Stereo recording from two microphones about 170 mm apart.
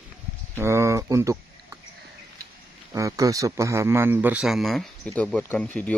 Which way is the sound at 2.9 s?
20° right (ahead or behind).